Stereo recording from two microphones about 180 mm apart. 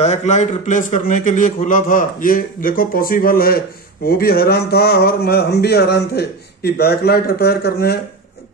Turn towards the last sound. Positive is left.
turn(degrees=60)  # may be behind; listen again after turning